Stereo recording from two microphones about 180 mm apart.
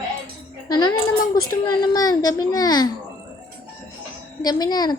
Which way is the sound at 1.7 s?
20° left (ahead or behind).